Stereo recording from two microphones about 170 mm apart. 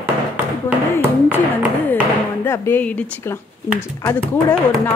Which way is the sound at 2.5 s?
10° left (ahead or behind).